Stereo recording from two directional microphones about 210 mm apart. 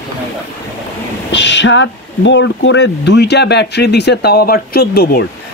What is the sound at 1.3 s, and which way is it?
Speech, 60° left (ahead or behind).